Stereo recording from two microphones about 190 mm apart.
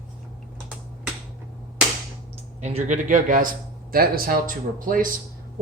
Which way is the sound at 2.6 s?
35° right (ahead or behind).